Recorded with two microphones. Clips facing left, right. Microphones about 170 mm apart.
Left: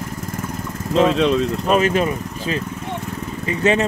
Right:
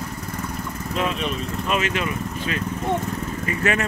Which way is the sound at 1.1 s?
90° left.